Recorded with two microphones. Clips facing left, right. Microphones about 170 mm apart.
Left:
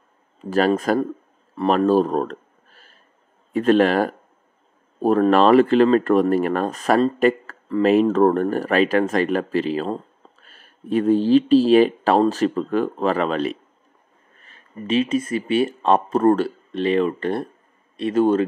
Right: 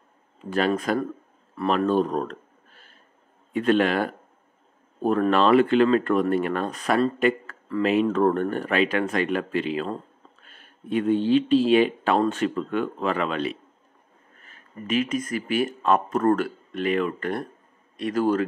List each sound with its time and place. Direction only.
0.5 s speech: 45° left (ahead or behind)
14.5 s speech: 25° left (ahead or behind)